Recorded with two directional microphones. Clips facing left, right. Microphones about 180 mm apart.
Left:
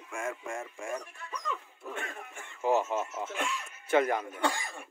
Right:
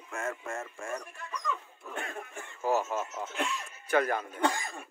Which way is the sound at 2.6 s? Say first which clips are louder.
Left 2 dB; 20° left (ahead or behind).